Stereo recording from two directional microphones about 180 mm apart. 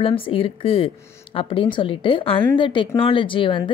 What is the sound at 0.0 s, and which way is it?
A woman's voice, 30° left (ahead or behind).